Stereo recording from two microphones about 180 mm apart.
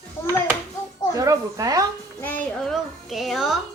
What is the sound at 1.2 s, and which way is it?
Speech, 20° right (ahead or behind).